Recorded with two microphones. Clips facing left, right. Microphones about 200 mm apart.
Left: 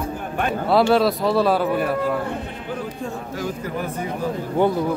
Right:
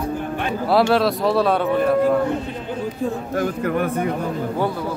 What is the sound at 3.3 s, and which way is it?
Speech, 60° right (ahead or behind).